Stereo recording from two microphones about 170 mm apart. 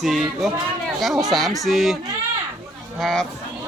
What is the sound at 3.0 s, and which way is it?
Speech, centre (ahead or behind).